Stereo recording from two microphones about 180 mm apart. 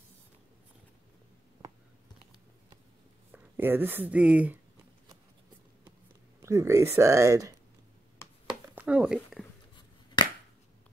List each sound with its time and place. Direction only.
3.5 s speech: 10° right (ahead or behind)
6.4 s speech: 15° right (ahead or behind)
8.5 s a sound: 5° right (ahead or behind)
10.2 s finger snapping: 25° left (ahead or behind)